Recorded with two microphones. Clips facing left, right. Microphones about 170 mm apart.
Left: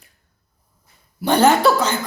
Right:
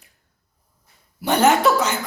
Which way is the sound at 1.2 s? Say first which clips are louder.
Left 2 dB; 35° left (ahead or behind).